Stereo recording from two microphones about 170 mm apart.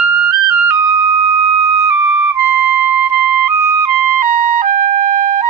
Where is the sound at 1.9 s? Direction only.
10° right (ahead or behind).